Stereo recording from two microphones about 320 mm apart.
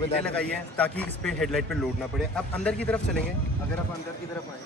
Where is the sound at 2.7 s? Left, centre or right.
Centre.